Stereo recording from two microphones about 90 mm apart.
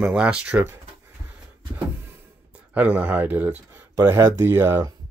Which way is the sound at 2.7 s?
15° right (ahead or behind).